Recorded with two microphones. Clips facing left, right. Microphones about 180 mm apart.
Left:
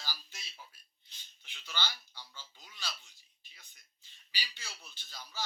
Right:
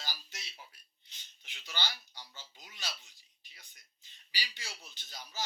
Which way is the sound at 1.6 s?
15° right (ahead or behind).